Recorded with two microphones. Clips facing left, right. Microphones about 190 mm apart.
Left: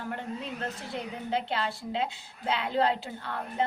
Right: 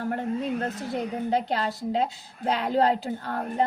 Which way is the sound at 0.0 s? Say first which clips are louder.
Right 8 dB; 45° right (ahead or behind).